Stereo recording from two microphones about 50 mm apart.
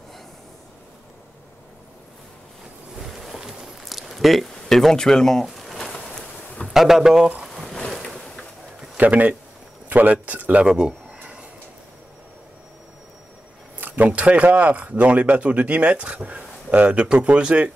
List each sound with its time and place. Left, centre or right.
3.0 s a sound: centre
6.7 s speech: centre
7.4 s a sound: centre
7.9 s boat: centre
8.9 s speech: right
10.6 s speech: centre
13.7 s speech: right